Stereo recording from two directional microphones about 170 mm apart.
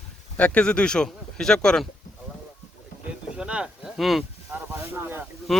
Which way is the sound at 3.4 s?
5° right (ahead or behind).